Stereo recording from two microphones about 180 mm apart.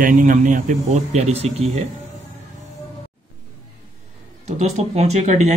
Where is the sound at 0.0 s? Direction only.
45° right (ahead or behind).